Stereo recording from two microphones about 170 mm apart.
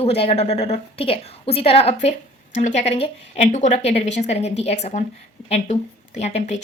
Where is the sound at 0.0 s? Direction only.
35° left (ahead or behind).